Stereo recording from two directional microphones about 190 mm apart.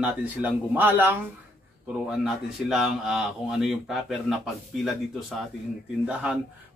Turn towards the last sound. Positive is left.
turn(degrees=-5)  # may be behind; listen again after turning